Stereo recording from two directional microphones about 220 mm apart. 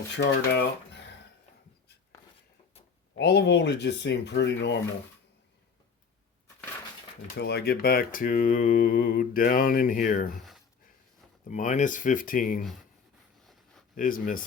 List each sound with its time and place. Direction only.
0.2 s speech: 50° left (ahead or behind)
3.2 s speech: 50° left (ahead or behind)
7.3 s mantra: 50° left (ahead or behind)
11.4 s mantra: 35° left (ahead or behind)
13.4 s a sound: centre (ahead or behind)
13.9 s mantra: 40° left (ahead or behind)